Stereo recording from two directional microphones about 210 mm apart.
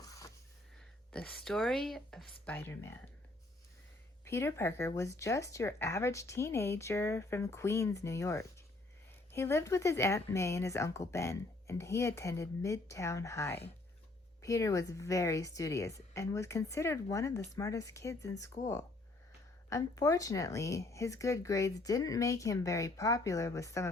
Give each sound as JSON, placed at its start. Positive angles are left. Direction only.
{"t": 0.0, "sound": "a sound", "side_deg": 15}
{"t": 1.1, "sound": "speech", "side_deg": 5}
{"t": 4.3, "sound": "speech", "side_deg": 10}